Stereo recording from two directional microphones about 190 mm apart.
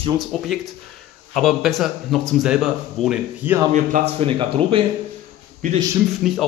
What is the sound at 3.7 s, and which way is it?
Speech, 35° right (ahead or behind).